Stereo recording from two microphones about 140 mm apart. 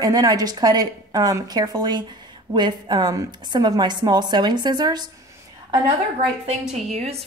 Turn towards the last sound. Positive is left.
turn(degrees=-50)  # may be behind; listen again after turning